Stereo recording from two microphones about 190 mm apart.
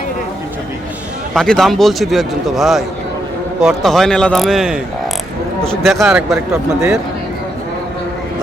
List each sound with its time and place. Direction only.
1.3 s a man's voice: centre (ahead or behind)